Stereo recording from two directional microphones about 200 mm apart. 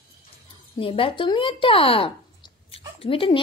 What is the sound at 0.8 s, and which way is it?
Speech, 25° left (ahead or behind).